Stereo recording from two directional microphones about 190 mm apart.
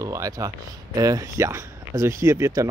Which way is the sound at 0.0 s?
15° right (ahead or behind).